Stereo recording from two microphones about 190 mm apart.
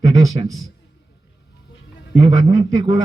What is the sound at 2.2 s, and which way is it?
Speech, 15° right (ahead or behind).